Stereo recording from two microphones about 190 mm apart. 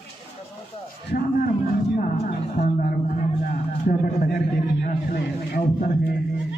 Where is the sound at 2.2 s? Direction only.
45° left (ahead or behind).